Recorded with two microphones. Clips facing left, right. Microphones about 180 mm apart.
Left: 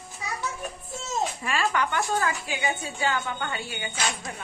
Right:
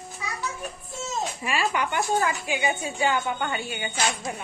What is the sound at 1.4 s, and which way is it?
Speech, 10° right (ahead or behind).